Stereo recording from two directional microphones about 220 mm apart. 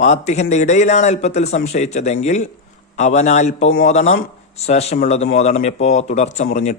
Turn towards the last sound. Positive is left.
turn(degrees=30)  # may be behind; listen again after turning